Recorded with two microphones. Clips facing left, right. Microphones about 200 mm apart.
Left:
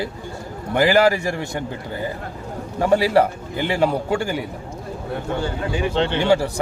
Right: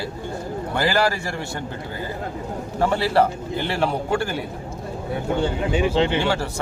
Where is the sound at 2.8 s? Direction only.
15° left (ahead or behind).